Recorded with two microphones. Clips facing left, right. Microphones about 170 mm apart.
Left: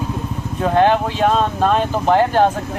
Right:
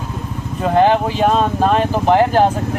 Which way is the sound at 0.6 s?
5° right (ahead or behind).